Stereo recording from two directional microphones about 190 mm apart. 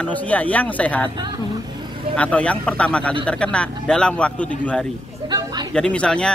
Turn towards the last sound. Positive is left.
turn(degrees=5)  # may be behind; listen again after turning